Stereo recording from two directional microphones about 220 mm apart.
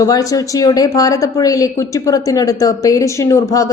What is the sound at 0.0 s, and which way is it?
A woman's voice, 15° left (ahead or behind).